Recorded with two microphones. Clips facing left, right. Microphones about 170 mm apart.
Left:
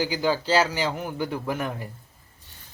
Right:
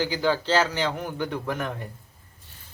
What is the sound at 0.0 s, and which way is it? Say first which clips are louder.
A man's voice: even; 10° left (ahead or behind).